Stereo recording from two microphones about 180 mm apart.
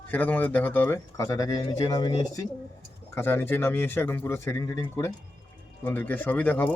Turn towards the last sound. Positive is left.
turn(degrees=10)  # may be behind; listen again after turning